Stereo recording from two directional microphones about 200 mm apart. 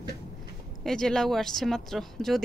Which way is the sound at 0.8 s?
Centre (ahead or behind).